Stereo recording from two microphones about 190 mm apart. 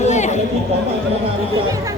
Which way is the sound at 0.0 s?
40° left (ahead or behind).